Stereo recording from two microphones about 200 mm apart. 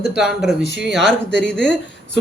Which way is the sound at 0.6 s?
60° right (ahead or behind).